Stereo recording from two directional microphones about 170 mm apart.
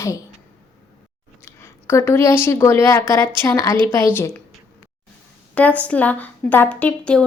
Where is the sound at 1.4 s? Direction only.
15° left (ahead or behind).